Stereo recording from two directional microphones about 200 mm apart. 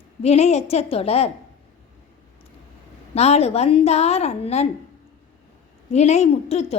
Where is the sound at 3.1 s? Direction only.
30° left (ahead or behind).